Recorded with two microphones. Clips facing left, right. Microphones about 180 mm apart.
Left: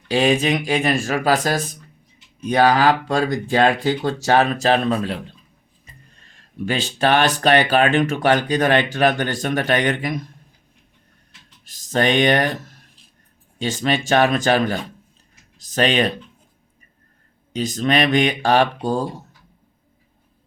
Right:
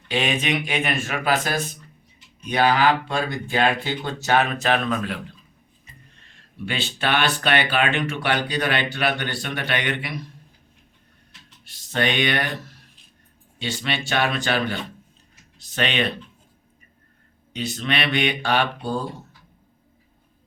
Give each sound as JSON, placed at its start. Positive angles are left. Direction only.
{"t": 0.1, "sound": "speech", "side_deg": 35}
{"t": 6.6, "sound": "speech", "side_deg": 40}
{"t": 11.6, "sound": "speech", "side_deg": 40}
{"t": 17.5, "sound": "speech", "side_deg": 40}